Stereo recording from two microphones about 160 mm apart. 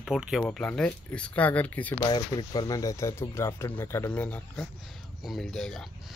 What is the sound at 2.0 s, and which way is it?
Speech, 25° left (ahead or behind).